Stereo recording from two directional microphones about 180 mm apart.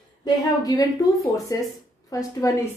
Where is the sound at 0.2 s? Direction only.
20° left (ahead or behind).